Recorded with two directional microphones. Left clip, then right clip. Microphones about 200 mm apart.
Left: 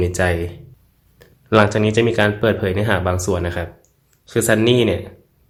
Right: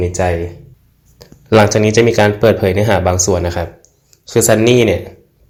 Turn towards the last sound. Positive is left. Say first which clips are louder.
# right 5 dB
turn(degrees=-5)  # may be behind; listen again after turning